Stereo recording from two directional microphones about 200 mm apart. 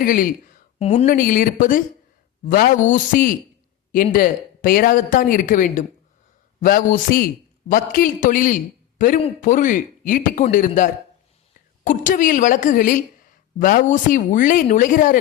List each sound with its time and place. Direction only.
0.0 s speech: 45° left (ahead or behind)
0.8 s a man's voice: 30° left (ahead or behind)